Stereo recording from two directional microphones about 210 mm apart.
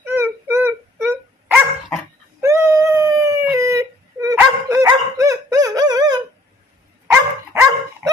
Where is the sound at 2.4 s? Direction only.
15° right (ahead or behind).